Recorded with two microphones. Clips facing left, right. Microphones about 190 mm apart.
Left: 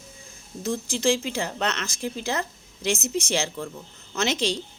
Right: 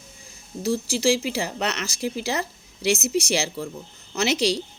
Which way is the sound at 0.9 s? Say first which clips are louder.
Even; 5° right (ahead or behind).